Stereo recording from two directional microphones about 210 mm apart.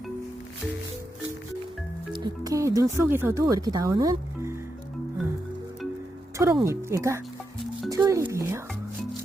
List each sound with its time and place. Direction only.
2.1 s speech: 20° right (ahead or behind)
6.3 s speech: 15° right (ahead or behind)